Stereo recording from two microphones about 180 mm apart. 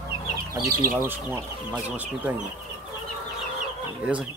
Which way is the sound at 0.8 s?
15° right (ahead or behind).